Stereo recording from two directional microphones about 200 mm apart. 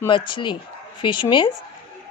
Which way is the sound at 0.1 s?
25° left (ahead or behind).